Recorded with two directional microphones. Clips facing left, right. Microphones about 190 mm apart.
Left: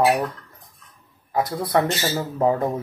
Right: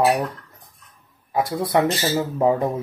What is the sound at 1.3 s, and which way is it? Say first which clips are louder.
Speech: right 1 dB; 20° right (ahead or behind).